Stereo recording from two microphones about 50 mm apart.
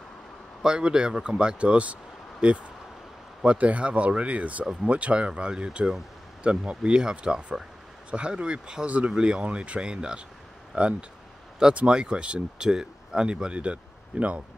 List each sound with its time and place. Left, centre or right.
0.7 s speech: centre